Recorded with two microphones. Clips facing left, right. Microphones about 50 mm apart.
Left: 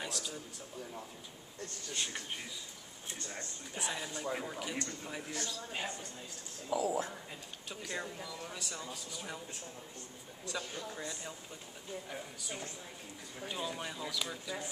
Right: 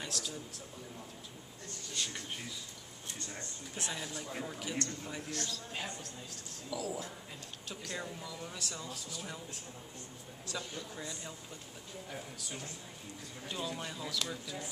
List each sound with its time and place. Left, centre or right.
0.0 s a man's voice: centre
2.0 s speech: left
3.7 s a man's voice: centre
6.7 s speech: left
7.7 s a man's voice: centre
10.5 s a man's voice: centre